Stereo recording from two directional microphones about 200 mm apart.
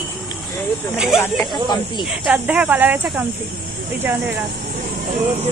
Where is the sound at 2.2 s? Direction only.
5° right (ahead or behind).